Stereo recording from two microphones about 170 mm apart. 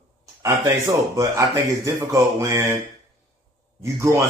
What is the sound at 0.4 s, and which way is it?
A man's voice, 20° right (ahead or behind).